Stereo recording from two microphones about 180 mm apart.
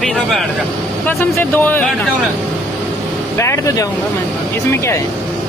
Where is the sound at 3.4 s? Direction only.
15° left (ahead or behind).